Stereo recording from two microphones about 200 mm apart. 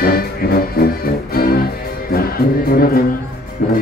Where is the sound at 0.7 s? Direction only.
50° left (ahead or behind).